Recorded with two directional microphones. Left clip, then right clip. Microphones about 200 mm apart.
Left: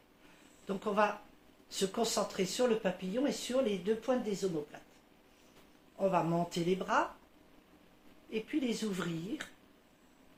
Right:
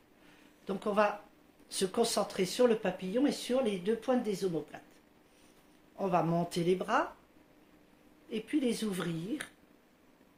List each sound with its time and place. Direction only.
0.7 s speech: 60° right (ahead or behind)
6.0 s speech: 55° right (ahead or behind)
8.3 s speech: 55° right (ahead or behind)